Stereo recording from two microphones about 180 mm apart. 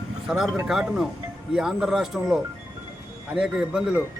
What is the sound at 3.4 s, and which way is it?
Speech, 5° right (ahead or behind).